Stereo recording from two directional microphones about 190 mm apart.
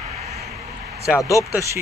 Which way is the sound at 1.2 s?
15° left (ahead or behind).